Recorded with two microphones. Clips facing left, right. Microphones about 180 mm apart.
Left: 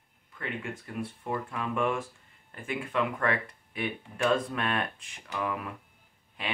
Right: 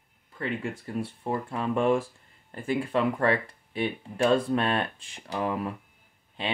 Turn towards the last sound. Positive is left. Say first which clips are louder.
# right 4 dB
turn(degrees=-30)  # may be behind; listen again after turning